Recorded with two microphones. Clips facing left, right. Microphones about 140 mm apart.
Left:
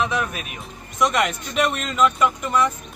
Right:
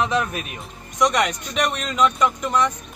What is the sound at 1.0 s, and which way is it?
Speech, centre (ahead or behind).